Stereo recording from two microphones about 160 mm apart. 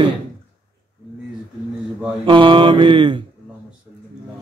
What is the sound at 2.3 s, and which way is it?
Mantra, 30° right (ahead or behind).